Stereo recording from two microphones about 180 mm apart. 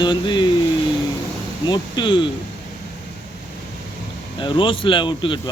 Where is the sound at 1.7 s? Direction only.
25° left (ahead or behind).